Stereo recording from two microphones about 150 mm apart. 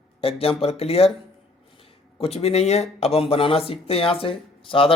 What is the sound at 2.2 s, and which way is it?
Speech, 40° left (ahead or behind).